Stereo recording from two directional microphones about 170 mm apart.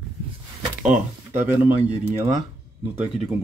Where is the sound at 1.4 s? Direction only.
10° right (ahead or behind).